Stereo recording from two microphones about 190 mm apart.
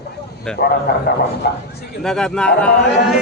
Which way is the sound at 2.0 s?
5° left (ahead or behind).